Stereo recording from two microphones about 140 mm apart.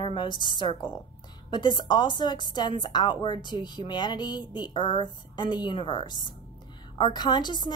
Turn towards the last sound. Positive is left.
turn(degrees=30)  # may be behind; listen again after turning